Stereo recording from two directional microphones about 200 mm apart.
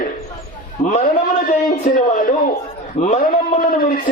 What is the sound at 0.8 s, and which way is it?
Speech, 35° left (ahead or behind).